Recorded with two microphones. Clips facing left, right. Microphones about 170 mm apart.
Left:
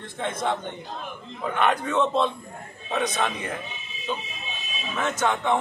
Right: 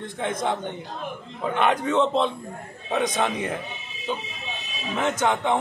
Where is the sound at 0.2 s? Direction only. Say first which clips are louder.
Right 1 dB; 15° right (ahead or behind).